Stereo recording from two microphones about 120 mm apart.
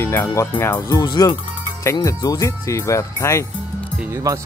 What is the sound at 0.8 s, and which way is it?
Speech, 35° left (ahead or behind).